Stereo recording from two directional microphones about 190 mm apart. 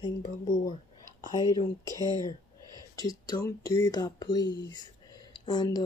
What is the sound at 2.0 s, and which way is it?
Speech, 20° right (ahead or behind).